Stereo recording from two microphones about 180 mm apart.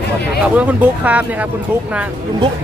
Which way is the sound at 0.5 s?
10° right (ahead or behind).